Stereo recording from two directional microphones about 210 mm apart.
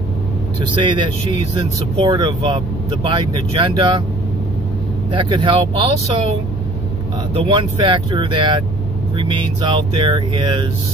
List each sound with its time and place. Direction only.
0.7 s speech: 20° right (ahead or behind)
2.0 s speech: 20° right (ahead or behind)
5.1 s speech: 25° right (ahead or behind)
7.3 s speech: 25° right (ahead or behind)